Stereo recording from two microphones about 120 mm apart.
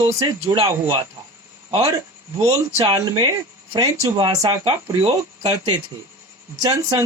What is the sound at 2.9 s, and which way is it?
Speech, 35° right (ahead or behind).